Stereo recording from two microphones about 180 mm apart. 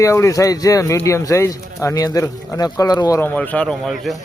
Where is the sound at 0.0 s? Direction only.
15° left (ahead or behind); by 4.2 s centre (ahead or behind).